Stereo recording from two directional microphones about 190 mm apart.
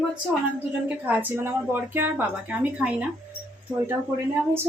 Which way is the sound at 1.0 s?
10° right (ahead or behind).